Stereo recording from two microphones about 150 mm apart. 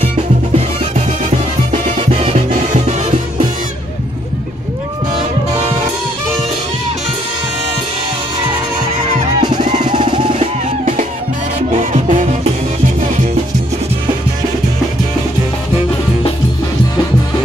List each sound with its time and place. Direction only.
1.7 s music: 40° right (ahead or behind)
9.6 s music: 55° right (ahead or behind)